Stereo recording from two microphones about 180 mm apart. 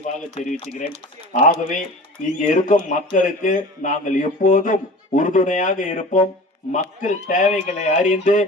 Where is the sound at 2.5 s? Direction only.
45° left (ahead or behind).